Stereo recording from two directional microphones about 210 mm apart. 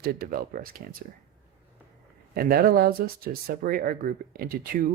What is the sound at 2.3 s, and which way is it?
Speech, 45° right (ahead or behind).